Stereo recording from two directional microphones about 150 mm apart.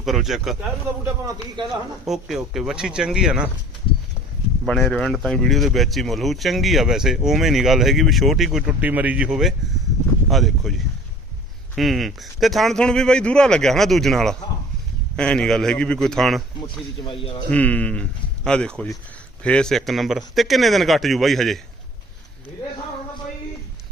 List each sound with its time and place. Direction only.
0.0 s speech: centre (ahead or behind)
2.0 s speech: centre (ahead or behind)
4.6 s speech: centre (ahead or behind)
16.6 s speech: 35° left (ahead or behind)
17.5 s speech: 10° left (ahead or behind)